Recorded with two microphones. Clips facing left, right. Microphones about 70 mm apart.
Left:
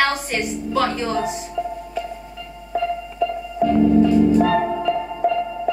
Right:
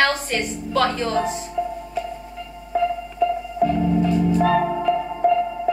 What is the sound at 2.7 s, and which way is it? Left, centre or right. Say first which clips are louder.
Music: right 1 dB; centre.